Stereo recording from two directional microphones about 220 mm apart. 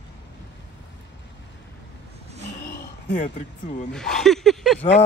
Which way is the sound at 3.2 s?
35° left (ahead or behind).